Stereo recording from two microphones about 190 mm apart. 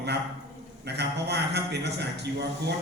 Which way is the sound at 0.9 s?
60° right (ahead or behind).